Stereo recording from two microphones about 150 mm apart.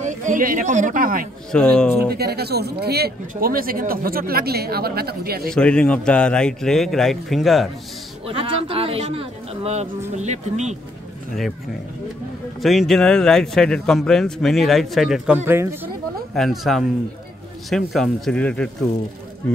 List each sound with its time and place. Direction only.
0.0 s speech: 55° right (ahead or behind)
1.5 s a man's voice: 5° left (ahead or behind)
2.0 s speech: 90° right
5.5 s a man's voice: 5° left (ahead or behind)
8.3 s speech: 35° right (ahead or behind)
12.6 s a man's voice: centre (ahead or behind); by 15.9 s 15° right (ahead or behind)
16.3 s a man's voice: centre (ahead or behind)